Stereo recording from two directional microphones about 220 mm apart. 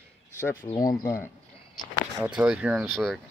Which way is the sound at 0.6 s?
15° left (ahead or behind).